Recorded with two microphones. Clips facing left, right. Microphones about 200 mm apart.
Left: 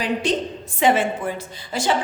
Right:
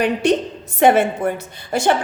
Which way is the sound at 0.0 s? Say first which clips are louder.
Right 5 dB; 60° right (ahead or behind).